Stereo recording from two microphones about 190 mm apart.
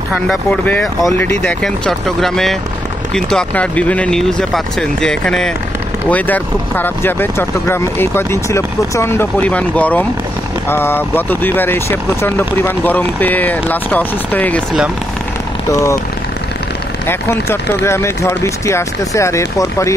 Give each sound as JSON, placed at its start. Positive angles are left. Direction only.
{"t": 0.1, "sound": "speech", "side_deg": 0}
{"t": 17.1, "sound": "speech", "side_deg": 15}